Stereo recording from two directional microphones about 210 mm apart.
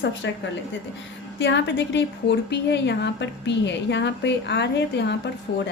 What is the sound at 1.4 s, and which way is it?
A woman's voice, 60° left (ahead or behind).